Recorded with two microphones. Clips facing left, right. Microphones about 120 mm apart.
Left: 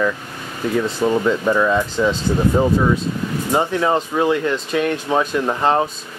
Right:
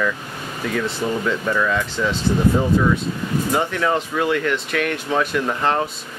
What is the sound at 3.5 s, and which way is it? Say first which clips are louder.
Speech: left 4 dB; 25° left (ahead or behind).